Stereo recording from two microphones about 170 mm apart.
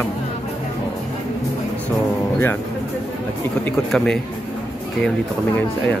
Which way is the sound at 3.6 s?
5° left (ahead or behind).